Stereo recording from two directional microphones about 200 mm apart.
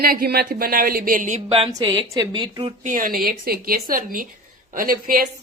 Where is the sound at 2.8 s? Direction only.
40° right (ahead or behind).